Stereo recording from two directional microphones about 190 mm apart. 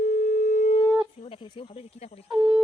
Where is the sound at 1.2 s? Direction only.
25° left (ahead or behind).